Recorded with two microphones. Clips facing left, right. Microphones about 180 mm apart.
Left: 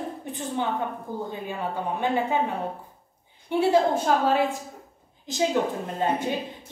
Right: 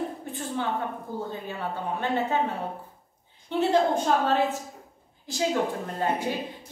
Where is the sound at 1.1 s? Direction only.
15° left (ahead or behind).